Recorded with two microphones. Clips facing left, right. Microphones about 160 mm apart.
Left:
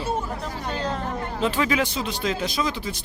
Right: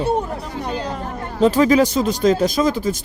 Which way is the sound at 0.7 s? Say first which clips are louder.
Right 1 dB; 10° right (ahead or behind).